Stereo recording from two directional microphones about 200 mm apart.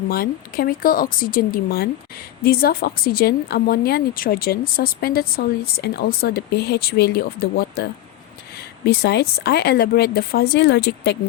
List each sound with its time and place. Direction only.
0.1 s a woman's voice: 50° left (ahead or behind)